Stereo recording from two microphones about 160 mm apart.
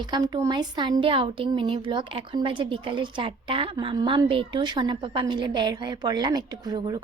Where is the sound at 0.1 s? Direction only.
25° right (ahead or behind).